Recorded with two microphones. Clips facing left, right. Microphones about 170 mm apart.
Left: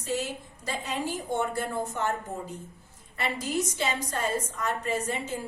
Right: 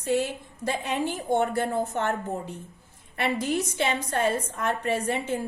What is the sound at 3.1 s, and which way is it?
A woman's voice, 60° right (ahead or behind).